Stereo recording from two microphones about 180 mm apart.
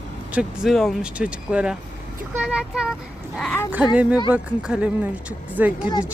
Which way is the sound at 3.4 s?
10° left (ahead or behind).